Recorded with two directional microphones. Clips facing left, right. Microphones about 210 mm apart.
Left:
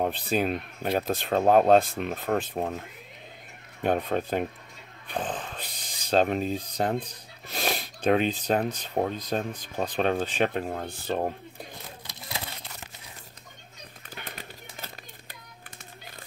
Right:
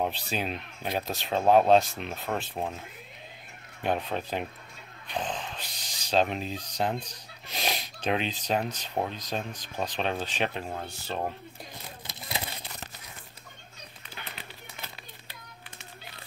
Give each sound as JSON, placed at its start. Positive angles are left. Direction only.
{"t": 0.0, "sound": "speech", "side_deg": 50}
{"t": 3.8, "sound": "speech", "side_deg": 50}
{"t": 14.1, "sound": "run", "side_deg": 45}